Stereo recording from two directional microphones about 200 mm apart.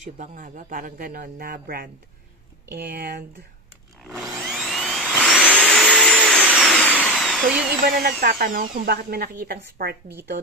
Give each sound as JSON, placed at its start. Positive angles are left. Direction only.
{"t": 0.2, "sound": "speech", "side_deg": -40}
{"t": 4.0, "sound": "vacuum cleaner", "side_deg": 0}
{"t": 7.8, "sound": "speech", "side_deg": -50}